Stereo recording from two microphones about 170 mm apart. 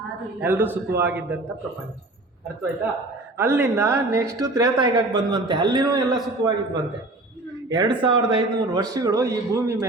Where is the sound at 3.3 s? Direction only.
15° right (ahead or behind).